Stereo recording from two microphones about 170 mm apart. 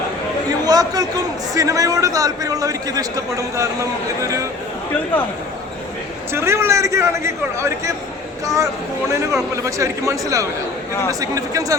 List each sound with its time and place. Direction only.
0.6 s a man's voice: 20° right (ahead or behind)
6.3 s a man's voice: 15° right (ahead or behind)
9.1 s a man's voice: 15° right (ahead or behind)